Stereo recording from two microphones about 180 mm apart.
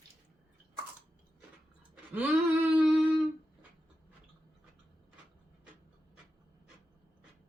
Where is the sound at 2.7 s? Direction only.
5° right (ahead or behind).